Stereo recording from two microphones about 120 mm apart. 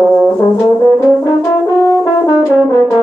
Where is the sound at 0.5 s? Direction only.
20° left (ahead or behind).